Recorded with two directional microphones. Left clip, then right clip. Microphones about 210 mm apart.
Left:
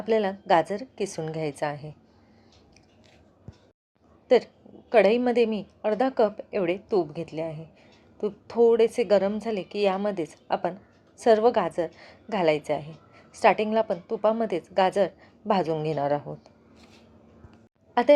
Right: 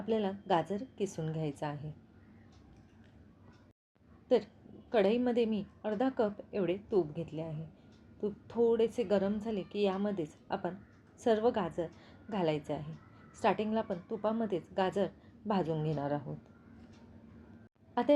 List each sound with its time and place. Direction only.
0.1 s a woman's voice: 20° left (ahead or behind)
4.9 s a woman's voice: 20° left (ahead or behind)